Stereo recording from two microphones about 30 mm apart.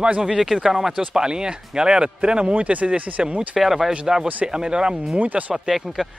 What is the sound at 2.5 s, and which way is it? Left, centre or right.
Speech, right.